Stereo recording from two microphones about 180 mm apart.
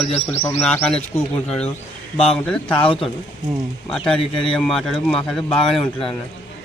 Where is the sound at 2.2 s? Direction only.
5° left (ahead or behind).